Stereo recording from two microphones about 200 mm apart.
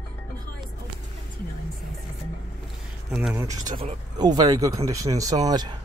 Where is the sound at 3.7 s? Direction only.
40° right (ahead or behind).